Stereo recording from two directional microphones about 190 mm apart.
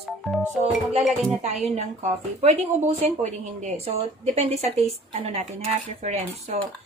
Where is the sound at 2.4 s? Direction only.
35° right (ahead or behind).